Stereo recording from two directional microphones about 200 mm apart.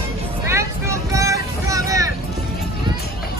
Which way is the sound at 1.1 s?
15° right (ahead or behind).